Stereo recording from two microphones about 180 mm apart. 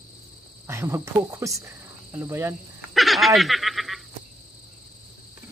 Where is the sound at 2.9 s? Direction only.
Centre (ahead or behind).